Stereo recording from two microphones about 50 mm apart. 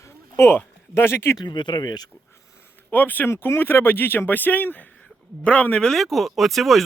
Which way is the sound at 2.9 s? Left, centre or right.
Left.